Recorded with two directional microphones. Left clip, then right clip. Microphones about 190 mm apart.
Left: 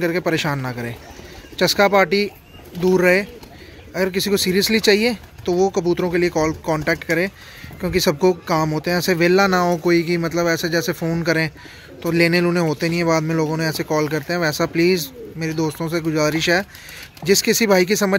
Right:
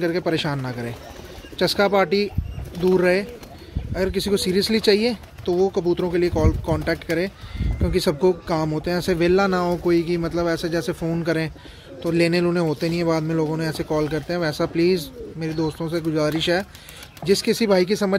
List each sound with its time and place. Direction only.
0.0 s speech: 5° left (ahead or behind)
5.5 s speech: 35° left (ahead or behind)
5.9 s speech: 10° left (ahead or behind)